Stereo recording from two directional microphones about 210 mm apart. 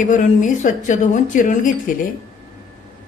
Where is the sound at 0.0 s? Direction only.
35° left (ahead or behind).